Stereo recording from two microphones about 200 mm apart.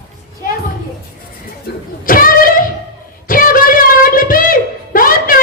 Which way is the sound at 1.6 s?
45° left (ahead or behind).